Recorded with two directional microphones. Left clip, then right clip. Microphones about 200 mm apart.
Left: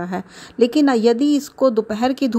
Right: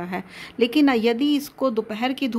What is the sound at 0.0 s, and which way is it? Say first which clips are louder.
A woman's voice: left 3 dB; 25° left (ahead or behind).